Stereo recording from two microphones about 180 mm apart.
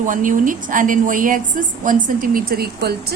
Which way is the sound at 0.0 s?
45° right (ahead or behind).